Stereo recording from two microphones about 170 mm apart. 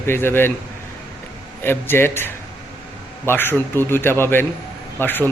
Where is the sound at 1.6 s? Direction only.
15° left (ahead or behind).